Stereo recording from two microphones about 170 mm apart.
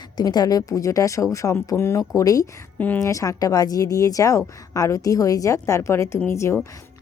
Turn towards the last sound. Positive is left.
turn(degrees=15)  # may be behind; listen again after turning